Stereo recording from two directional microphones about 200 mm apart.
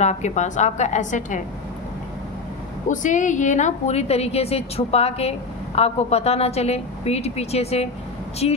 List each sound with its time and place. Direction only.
0.0 s a woman's voice: 35° left (ahead or behind)
2.9 s a woman's voice: 40° left (ahead or behind)